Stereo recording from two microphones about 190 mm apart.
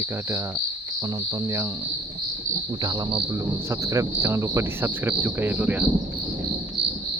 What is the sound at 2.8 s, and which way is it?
Cricket, 20° right (ahead or behind).